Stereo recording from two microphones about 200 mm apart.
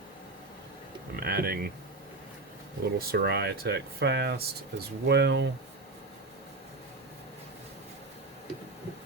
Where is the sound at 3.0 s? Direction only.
50° right (ahead or behind).